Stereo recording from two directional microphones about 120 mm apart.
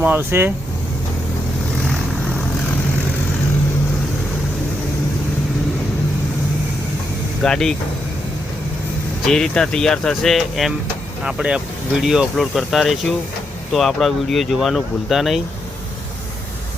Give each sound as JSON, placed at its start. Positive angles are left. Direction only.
{"t": 0.0, "sound": "speech", "side_deg": -15}
{"t": 7.4, "sound": "speech", "side_deg": 5}
{"t": 9.2, "sound": "speech", "side_deg": 5}